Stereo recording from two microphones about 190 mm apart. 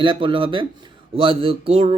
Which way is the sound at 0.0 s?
25° right (ahead or behind).